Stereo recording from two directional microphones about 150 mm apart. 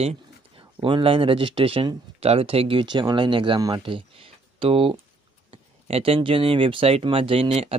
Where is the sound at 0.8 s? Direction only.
35° right (ahead or behind).